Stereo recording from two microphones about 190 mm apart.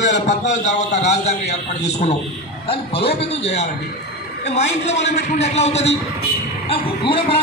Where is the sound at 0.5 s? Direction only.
40° left (ahead or behind).